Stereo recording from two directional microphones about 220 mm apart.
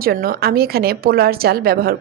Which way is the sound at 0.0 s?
40° right (ahead or behind).